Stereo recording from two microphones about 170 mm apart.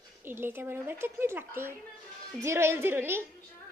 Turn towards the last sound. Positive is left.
turn(degrees=-15)  # may be behind; listen again after turning